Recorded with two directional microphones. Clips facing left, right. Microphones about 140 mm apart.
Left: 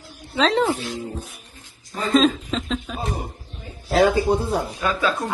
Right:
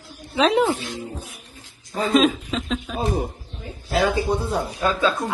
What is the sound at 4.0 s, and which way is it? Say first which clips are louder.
Speech: left 3 dB; 35° left (ahead or behind).